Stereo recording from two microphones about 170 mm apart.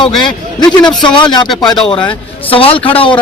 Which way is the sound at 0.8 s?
Centre (ahead or behind).